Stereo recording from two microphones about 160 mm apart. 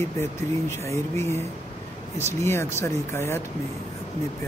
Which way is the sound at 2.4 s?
15° left (ahead or behind).